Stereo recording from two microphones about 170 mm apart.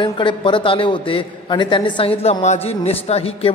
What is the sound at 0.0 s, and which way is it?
A man's voice, 30° left (ahead or behind).